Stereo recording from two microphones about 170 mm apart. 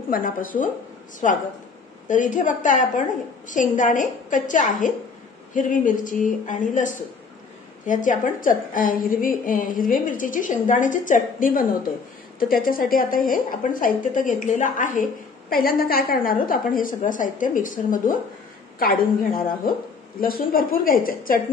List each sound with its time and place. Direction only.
0.1 s a woman's voice: 55° left (ahead or behind)
15.5 s a woman's voice: 60° left (ahead or behind)